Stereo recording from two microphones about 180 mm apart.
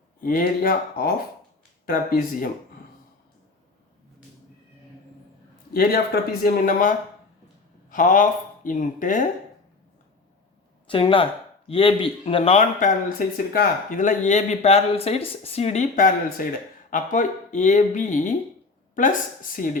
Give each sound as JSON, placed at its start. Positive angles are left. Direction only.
{"t": 0.2, "sound": "speech", "side_deg": 50}
{"t": 5.7, "sound": "speech", "side_deg": 55}
{"t": 10.8, "sound": "speech", "side_deg": 30}